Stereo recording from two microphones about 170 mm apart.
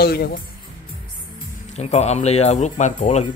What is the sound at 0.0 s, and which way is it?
Speech, 65° left (ahead or behind).